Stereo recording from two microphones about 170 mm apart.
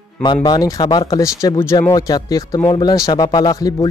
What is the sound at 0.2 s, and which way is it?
Speech, 25° left (ahead or behind).